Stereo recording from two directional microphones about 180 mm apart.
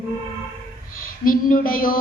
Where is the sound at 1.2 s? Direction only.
50° left (ahead or behind).